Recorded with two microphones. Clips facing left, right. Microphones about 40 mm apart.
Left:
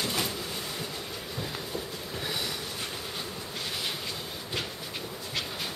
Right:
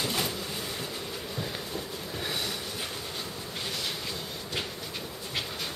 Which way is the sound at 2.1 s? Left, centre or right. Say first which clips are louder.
Even; centre.